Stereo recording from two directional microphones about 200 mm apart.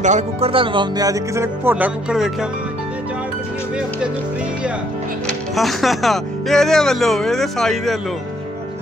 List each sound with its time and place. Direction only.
0.0 s speech: 35° right (ahead or behind); by 2.3 s 5° right (ahead or behind)
5.2 s speech: centre (ahead or behind)